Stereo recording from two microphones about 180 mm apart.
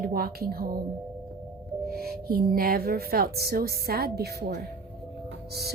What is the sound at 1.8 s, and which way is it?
A woman's voice, 55° right (ahead or behind).